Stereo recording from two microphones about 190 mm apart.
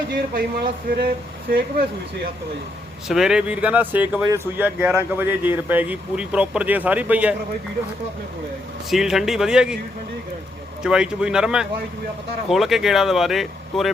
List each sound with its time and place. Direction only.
0.3 s speech: 50° right (ahead or behind)
3.1 s speech: 5° right (ahead or behind)
8.9 s speech: centre (ahead or behind)
10.8 s speech: 5° right (ahead or behind)